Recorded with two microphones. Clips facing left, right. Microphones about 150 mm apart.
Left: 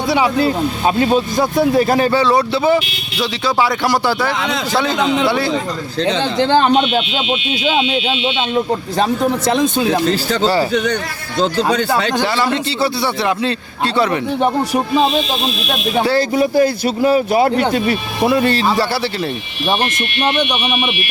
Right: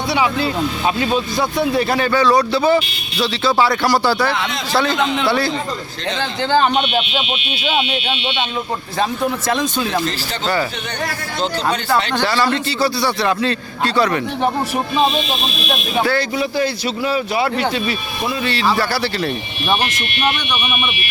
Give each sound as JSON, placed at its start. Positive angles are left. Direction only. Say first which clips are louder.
{"t": 0.1, "sound": "speech", "louder": "left 4 dB", "side_deg": 40}
{"t": 2.2, "sound": "a man's voice", "louder": "even", "side_deg": 20}
{"t": 9.5, "sound": "a man's voice", "louder": "left 6 dB", "side_deg": 20}
{"t": 10.4, "sound": "speech", "louder": "left 4 dB", "side_deg": 35}
{"t": 12.1, "sound": "a man's voice", "louder": "left 1 dB", "side_deg": 20}
{"t": 16.3, "sound": "speech", "louder": "left 6 dB", "side_deg": 50}
{"t": 20.5, "sound": "a man's voice", "louder": "left 3 dB", "side_deg": 25}